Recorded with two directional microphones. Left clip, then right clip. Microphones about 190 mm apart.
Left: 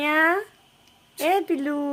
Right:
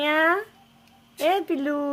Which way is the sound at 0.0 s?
5° left (ahead or behind).